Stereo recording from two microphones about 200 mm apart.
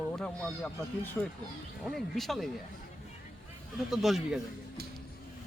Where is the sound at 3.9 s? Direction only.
Centre (ahead or behind).